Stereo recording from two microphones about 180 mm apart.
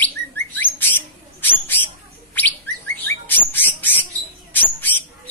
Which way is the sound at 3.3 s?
10° left (ahead or behind).